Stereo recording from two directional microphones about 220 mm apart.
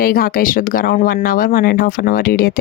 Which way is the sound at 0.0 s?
40° left (ahead or behind).